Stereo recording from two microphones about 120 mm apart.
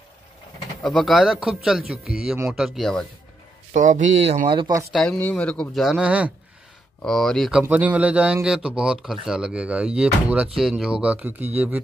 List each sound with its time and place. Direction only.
0.8 s a man's voice: centre (ahead or behind)
3.7 s speech: 90° right; by 4.7 s 45° right (ahead or behind)
4.9 s a man's voice: centre (ahead or behind)
7.0 s a man's voice: 5° left (ahead or behind)
7.6 s a man's voice: 15° right (ahead or behind)